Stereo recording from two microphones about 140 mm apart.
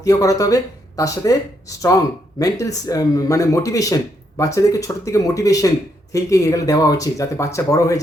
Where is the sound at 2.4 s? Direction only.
25° left (ahead or behind).